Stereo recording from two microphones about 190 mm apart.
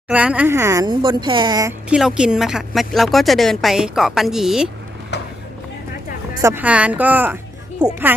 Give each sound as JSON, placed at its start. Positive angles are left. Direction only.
{"t": 0.1, "sound": "speech", "side_deg": -5}
{"t": 1.9, "sound": "speech", "side_deg": -5}
{"t": 5.1, "sound": "a sound", "side_deg": 65}
{"t": 6.4, "sound": "speech", "side_deg": -10}